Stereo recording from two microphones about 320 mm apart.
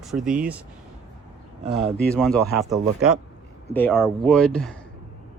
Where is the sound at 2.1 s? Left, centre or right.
Centre.